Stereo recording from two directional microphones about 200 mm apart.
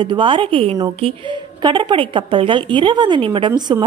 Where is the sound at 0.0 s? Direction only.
25° right (ahead or behind).